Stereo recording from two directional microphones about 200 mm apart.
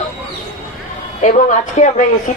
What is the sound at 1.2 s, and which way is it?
Speech, 40° left (ahead or behind).